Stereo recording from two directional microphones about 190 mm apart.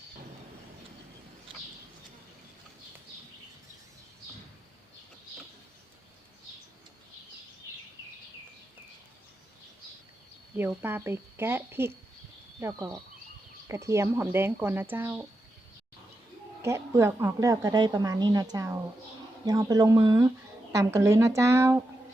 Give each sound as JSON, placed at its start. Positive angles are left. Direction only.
{"t": 10.6, "sound": "a woman's voice", "side_deg": -10}
{"t": 16.6, "sound": "a woman's voice", "side_deg": -15}